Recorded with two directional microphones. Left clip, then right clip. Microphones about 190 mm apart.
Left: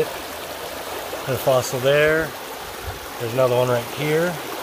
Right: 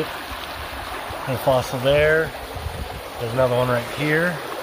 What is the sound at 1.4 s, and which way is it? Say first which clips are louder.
Speech: even; 15° left (ahead or behind).